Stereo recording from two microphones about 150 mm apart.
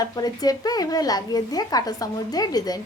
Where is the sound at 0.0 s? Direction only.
25° left (ahead or behind).